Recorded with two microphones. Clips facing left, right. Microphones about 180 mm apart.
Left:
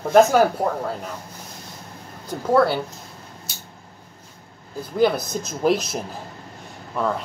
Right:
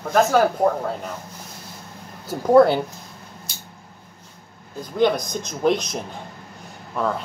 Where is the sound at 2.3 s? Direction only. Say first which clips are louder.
Right 4 dB; 15° right (ahead or behind).